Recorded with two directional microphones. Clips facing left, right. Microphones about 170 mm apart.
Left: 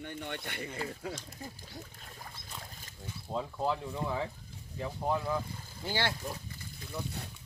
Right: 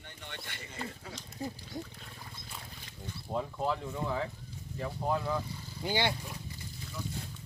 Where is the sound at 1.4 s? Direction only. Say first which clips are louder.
Right 7 dB; 20° right (ahead or behind).